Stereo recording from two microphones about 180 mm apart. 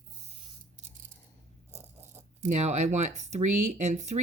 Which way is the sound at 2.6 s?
40° right (ahead or behind).